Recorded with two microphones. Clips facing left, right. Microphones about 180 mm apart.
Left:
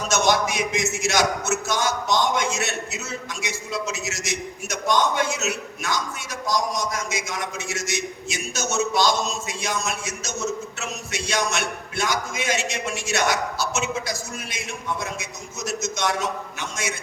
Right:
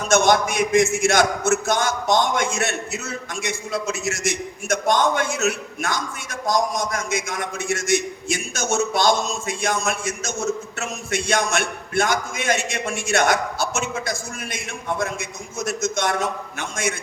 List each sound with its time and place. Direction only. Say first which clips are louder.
0.1 s a man's voice: right 4 dB; 50° right (ahead or behind)